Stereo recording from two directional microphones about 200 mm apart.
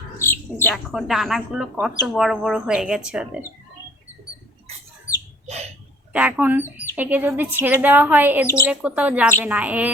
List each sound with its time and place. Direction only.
0.2 s speech: 10° left (ahead or behind); by 3.4 s 5° right (ahead or behind)
5.5 s a sound: 30° right (ahead or behind)
6.1 s a woman's voice: 5° right (ahead or behind)